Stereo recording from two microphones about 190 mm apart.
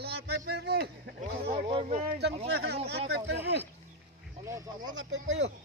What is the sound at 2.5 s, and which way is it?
Speech, 60° right (ahead or behind).